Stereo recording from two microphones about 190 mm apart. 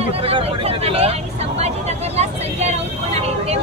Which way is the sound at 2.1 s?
35° right (ahead or behind).